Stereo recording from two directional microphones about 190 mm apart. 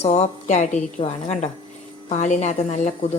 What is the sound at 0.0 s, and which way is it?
Speech, 35° left (ahead or behind).